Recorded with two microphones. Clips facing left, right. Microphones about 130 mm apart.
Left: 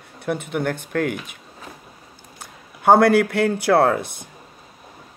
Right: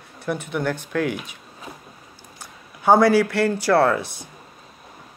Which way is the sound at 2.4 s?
55° left (ahead or behind).